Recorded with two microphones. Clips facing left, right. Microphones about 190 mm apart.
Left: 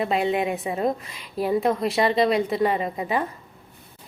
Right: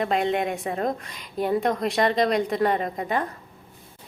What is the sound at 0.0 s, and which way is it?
A woman's voice, 5° left (ahead or behind).